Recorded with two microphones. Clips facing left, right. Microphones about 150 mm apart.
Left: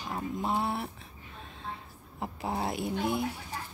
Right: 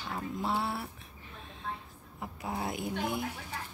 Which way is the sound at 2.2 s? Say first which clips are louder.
Left 4 dB; 30° left (ahead or behind).